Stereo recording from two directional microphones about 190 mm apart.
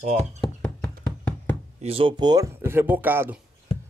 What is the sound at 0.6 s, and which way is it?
Knock, 5° left (ahead or behind).